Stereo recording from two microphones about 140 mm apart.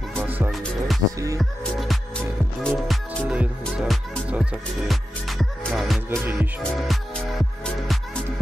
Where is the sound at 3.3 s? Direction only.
5° right (ahead or behind).